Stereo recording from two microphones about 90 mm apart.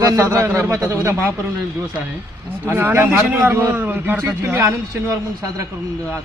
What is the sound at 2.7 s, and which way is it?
A man's voice, 25° right (ahead or behind).